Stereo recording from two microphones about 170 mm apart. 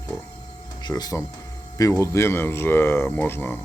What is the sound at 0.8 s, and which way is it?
Speech, 25° left (ahead or behind).